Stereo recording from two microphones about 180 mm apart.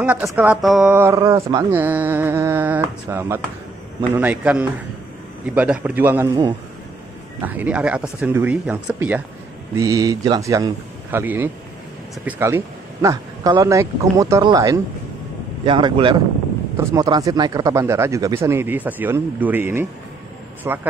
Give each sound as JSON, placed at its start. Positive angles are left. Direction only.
{"t": 0.0, "sound": "speech", "side_deg": -10}
{"t": 0.6, "sound": "mantra", "side_deg": 0}
{"t": 0.9, "sound": "speech", "side_deg": -15}
{"t": 7.4, "sound": "speech", "side_deg": -10}
{"t": 16.7, "sound": "speech", "side_deg": -15}